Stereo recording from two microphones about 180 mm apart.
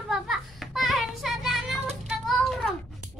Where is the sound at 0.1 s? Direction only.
Centre (ahead or behind).